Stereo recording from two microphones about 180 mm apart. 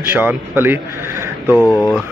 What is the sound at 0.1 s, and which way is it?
Speech, 10° right (ahead or behind).